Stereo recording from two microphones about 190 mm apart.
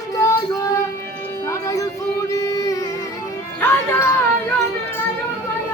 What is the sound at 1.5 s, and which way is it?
Music, 15° left (ahead or behind).